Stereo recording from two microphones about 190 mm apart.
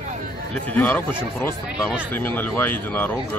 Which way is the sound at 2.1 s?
10° left (ahead or behind).